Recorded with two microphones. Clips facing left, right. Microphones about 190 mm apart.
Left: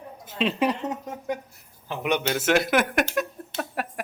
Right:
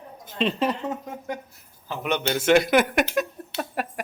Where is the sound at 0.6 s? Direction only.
15° left (ahead or behind).